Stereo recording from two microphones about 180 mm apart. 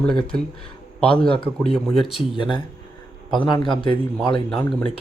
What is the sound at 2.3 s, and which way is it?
Speech, 25° left (ahead or behind).